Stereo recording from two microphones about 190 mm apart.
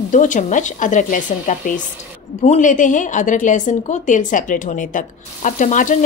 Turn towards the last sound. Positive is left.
turn(degrees=45)  # may be behind; listen again after turning